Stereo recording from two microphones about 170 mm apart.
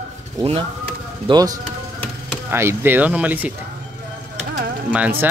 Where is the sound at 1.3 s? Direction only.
25° right (ahead or behind).